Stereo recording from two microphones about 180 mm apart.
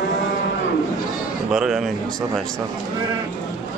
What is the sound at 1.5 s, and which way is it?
Speech, 5° right (ahead or behind).